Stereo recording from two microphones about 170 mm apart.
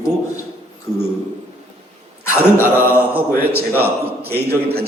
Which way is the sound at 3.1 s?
10° right (ahead or behind).